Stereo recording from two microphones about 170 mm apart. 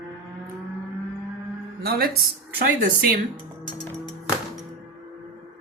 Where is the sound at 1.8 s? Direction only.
60° right (ahead or behind).